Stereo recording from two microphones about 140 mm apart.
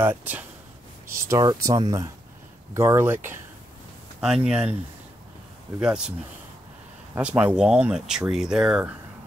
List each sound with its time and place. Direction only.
0.0 s speech: 15° right (ahead or behind)
5.8 s speech: 5° right (ahead or behind)
7.2 s speech: 10° right (ahead or behind)